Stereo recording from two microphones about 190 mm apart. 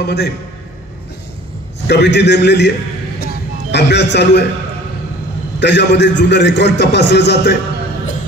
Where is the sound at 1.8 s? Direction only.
60° left (ahead or behind).